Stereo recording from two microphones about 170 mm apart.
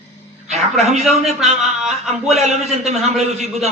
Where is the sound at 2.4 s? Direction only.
40° right (ahead or behind).